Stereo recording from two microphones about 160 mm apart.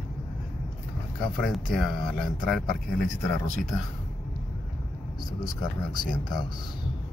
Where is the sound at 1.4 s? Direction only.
Centre (ahead or behind).